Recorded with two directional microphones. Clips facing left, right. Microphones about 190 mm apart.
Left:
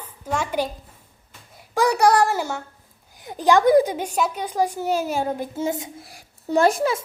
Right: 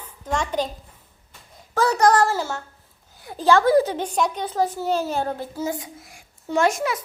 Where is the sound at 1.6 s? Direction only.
15° left (ahead or behind).